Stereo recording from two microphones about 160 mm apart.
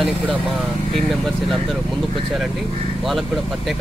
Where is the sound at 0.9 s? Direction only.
Centre (ahead or behind).